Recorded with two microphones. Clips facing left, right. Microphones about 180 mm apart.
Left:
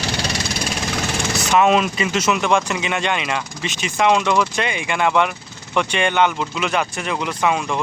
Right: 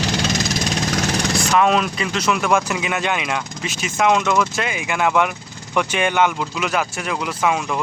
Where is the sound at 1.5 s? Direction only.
5° left (ahead or behind).